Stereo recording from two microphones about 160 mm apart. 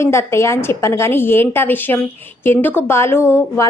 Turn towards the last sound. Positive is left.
turn(degrees=15)  # may be behind; listen again after turning